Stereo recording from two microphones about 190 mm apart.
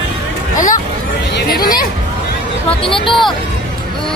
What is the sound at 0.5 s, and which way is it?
Chatter, 45° left (ahead or behind).